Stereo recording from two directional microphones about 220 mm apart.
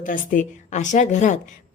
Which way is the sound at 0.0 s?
35° left (ahead or behind).